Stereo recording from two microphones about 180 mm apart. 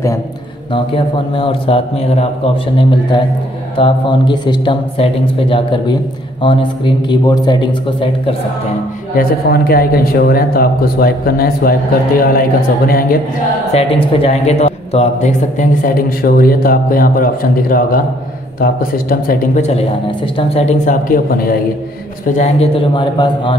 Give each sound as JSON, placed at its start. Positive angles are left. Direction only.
{"t": 0.7, "sound": "a man's voice", "side_deg": 30}
{"t": 9.1, "sound": "speech", "side_deg": 55}
{"t": 13.7, "sound": "a man's voice", "side_deg": 30}
{"t": 22.4, "sound": "a man's voice", "side_deg": 30}